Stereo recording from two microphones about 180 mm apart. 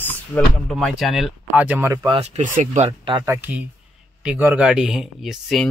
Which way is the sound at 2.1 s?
40° right (ahead or behind).